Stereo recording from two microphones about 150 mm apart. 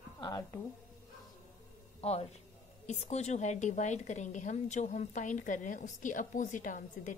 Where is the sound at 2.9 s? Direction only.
45° left (ahead or behind).